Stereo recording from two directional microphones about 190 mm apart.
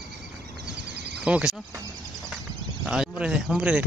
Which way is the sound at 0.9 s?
60° right (ahead or behind).